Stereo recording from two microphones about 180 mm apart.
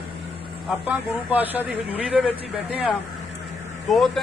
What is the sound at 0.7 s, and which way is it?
Speech, 10° right (ahead or behind).